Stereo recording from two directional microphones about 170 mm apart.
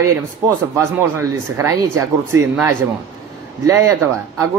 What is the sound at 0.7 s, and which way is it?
Speech, 15° right (ahead or behind).